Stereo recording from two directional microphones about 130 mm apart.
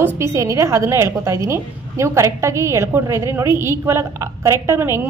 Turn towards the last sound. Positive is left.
turn(degrees=-20)  # may be behind; listen again after turning